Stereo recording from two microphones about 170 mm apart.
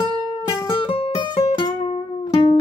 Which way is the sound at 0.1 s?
25° left (ahead or behind).